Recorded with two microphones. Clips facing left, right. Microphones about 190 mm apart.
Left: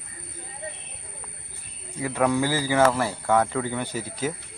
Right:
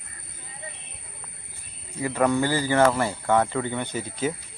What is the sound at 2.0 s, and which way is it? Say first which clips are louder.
Speech: right 1 dB; centre (ahead or behind).